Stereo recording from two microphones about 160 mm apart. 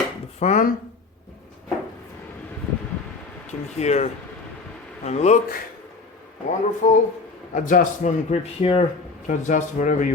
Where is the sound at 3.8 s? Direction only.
45° left (ahead or behind).